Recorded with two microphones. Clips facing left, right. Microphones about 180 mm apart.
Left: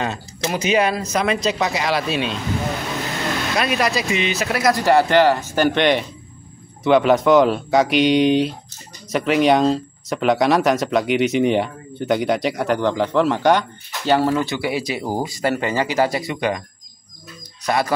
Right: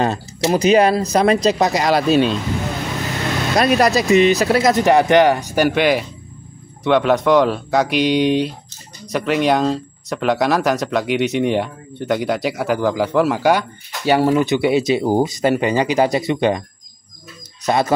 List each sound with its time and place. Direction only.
0.0 s speech: 35° right (ahead or behind)
3.5 s speech: 40° right (ahead or behind)
4.6 s speech: 25° right (ahead or behind)
17.6 s speech: 25° right (ahead or behind)